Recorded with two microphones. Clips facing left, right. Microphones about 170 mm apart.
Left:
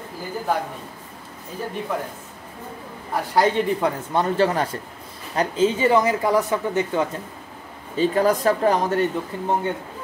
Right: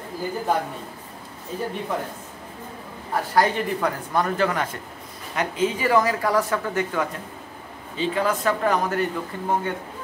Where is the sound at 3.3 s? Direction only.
20° left (ahead or behind).